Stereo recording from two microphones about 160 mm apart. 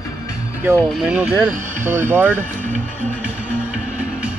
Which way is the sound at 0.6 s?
10° right (ahead or behind).